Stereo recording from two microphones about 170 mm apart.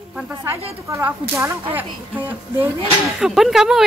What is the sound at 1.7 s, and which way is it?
A woman's voice, 10° right (ahead or behind).